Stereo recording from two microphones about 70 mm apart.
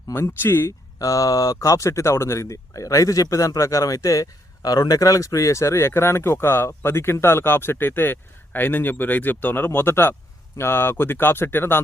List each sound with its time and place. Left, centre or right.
0.1 s speech: left
0.9 s speech: left